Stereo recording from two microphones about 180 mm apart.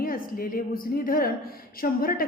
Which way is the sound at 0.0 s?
50° left (ahead or behind).